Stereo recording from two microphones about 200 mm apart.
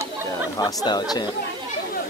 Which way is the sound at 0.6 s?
20° left (ahead or behind).